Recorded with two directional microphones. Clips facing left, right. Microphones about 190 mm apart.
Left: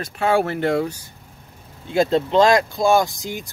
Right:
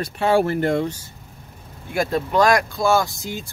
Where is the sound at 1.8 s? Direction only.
20° left (ahead or behind).